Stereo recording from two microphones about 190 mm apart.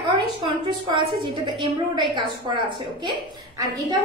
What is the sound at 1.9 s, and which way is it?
A woman's voice, 25° right (ahead or behind).